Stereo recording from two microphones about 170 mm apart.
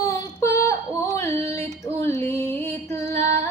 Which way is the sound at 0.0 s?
20° left (ahead or behind).